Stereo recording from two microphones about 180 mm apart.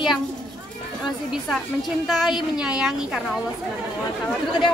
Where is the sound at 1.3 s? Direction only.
Centre (ahead or behind).